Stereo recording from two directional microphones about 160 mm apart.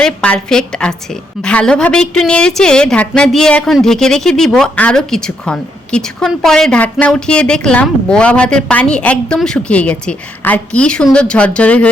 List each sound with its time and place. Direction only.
0.0 s a woman's voice: 5° left (ahead or behind)